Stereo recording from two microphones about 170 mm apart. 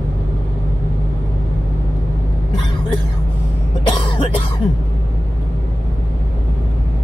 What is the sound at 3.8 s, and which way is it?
Cough, 30° left (ahead or behind).